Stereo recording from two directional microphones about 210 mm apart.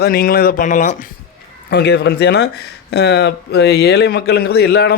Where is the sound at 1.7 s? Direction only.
50° left (ahead or behind).